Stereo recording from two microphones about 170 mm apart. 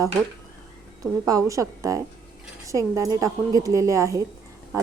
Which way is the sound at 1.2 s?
20° right (ahead or behind).